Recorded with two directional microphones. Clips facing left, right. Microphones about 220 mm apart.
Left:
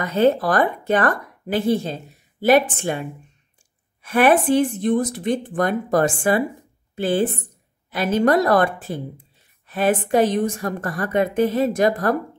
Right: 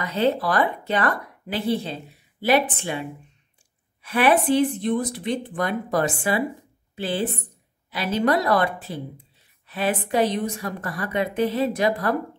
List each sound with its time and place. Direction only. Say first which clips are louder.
0.0 s speech: left 5 dB; 50° left (ahead or behind)